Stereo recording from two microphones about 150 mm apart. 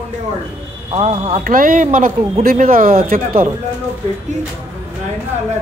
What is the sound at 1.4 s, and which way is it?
Speech, 65° right (ahead or behind).